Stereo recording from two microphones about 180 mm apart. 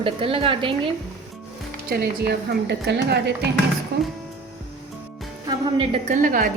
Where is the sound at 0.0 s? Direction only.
30° right (ahead or behind).